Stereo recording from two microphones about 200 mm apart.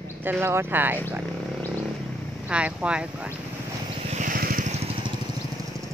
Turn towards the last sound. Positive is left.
turn(degrees=-45)  # may be behind; listen again after turning